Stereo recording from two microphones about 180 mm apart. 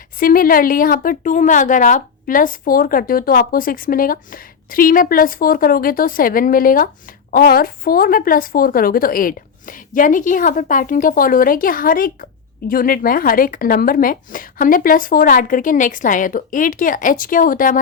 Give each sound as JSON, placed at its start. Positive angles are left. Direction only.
{"t": 0.2, "sound": "a woman's voice", "side_deg": 50}